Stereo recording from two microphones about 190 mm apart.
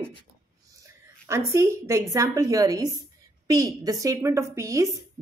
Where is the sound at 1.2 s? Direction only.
15° right (ahead or behind).